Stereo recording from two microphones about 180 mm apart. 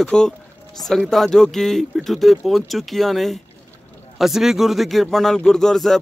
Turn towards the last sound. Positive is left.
turn(degrees=0)  # may be behind; listen again after turning